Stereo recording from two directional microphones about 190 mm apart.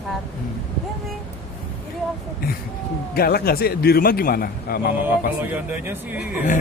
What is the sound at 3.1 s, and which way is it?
A man's voice, 55° left (ahead or behind).